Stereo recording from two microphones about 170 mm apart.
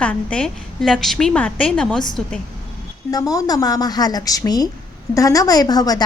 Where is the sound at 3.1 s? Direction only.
20° left (ahead or behind).